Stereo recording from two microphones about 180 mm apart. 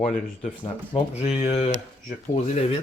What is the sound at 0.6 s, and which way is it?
Speech, 30° left (ahead or behind).